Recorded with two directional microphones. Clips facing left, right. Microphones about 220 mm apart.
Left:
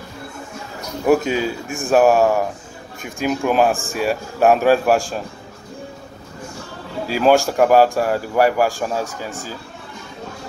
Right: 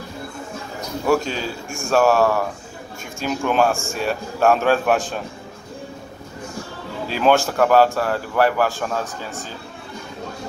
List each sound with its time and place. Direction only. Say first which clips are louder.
1.2 s a man's voice: left 6 dB; 5° left (ahead or behind)
1.8 s speech: left 3 dB; 15° left (ahead or behind)
3.3 s a man's voice: left 2 dB; 5° left (ahead or behind)
3.6 s a man's voice: left 2 dB; 15° left (ahead or behind)
7.1 s speech: left 3 dB; 5° left (ahead or behind)